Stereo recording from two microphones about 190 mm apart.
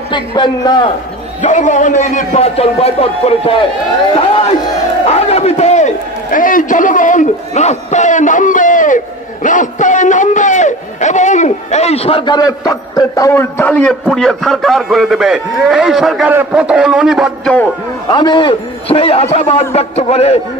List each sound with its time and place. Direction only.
0.1 s a man's voice: 25° left (ahead or behind)
1.4 s a man's voice: 40° left (ahead or behind); by 17.6 s centre (ahead or behind)
18.1 s a man's voice: 25° left (ahead or behind)